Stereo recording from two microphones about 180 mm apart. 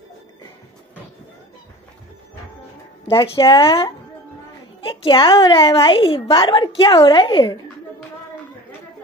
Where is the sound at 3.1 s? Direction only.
30° left (ahead or behind).